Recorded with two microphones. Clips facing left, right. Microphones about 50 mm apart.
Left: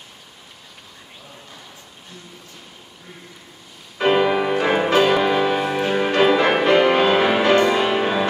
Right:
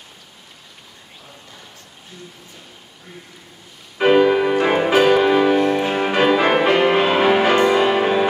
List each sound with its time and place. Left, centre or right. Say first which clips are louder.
4.0 s music: right 3 dB; centre